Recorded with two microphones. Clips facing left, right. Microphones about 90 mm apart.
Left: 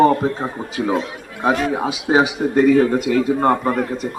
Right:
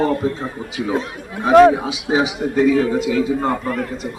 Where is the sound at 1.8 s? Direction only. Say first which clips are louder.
Left 2 dB; 50° left (ahead or behind).